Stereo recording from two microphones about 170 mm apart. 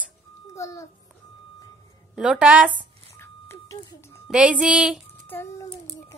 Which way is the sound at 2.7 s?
15° left (ahead or behind).